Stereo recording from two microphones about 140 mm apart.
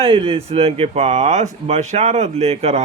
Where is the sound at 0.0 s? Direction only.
40° right (ahead or behind).